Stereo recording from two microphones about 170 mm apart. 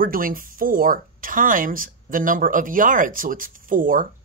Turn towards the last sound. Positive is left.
turn(degrees=-55)  # may be behind; listen again after turning